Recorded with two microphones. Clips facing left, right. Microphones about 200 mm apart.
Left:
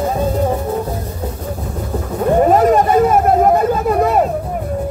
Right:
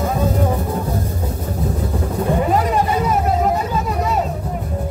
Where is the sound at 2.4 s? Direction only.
45° left (ahead or behind).